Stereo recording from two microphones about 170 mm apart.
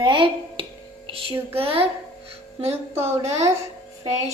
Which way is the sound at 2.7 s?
15° right (ahead or behind).